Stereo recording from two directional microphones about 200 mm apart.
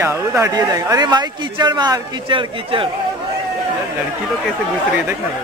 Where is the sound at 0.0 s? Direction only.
15° right (ahead or behind).